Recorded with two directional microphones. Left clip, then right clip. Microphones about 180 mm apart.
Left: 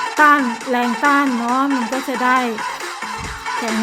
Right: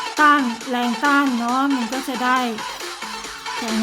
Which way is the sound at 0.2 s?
20° right (ahead or behind).